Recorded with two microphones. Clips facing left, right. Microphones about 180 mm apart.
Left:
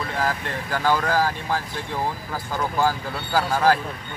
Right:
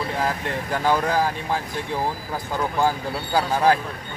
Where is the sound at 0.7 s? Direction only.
20° right (ahead or behind).